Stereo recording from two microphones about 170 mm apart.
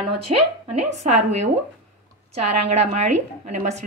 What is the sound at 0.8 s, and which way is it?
A woman's voice, 40° right (ahead or behind).